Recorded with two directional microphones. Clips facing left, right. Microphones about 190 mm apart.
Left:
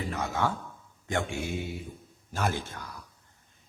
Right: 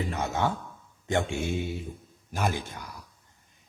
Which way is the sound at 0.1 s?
25° right (ahead or behind).